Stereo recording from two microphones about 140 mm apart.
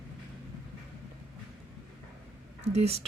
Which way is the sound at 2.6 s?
50° right (ahead or behind).